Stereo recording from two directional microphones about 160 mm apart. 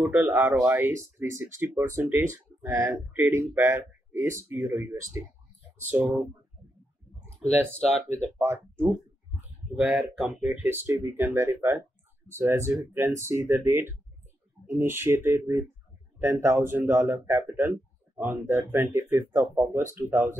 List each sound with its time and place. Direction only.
0.1 s speech: 15° right (ahead or behind)
8.1 s speech: 15° right (ahead or behind)